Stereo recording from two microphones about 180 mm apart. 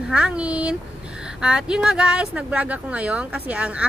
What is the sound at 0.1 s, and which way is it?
A woman's voice, 5° right (ahead or behind).